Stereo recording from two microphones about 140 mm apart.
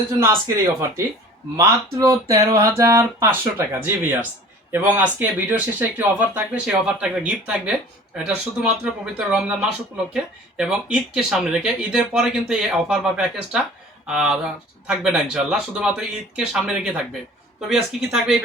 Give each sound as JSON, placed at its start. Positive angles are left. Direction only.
{"t": 0.2, "sound": "speech", "side_deg": -20}